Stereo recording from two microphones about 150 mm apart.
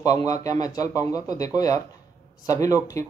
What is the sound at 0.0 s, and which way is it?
Speech, 25° left (ahead or behind).